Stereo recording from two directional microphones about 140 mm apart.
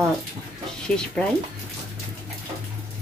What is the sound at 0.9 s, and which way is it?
Speech, 5° left (ahead or behind).